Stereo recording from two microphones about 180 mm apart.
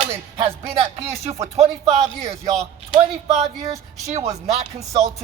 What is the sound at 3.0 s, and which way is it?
Speech, 35° right (ahead or behind).